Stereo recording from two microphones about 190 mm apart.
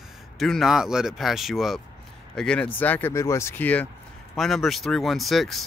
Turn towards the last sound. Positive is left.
turn(degrees=0)  # may be behind; listen again after turning